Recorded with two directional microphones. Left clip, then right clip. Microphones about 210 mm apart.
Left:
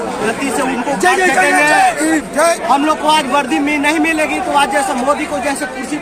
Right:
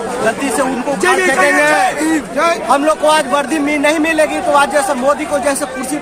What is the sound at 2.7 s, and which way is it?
A man's voice, 15° right (ahead or behind).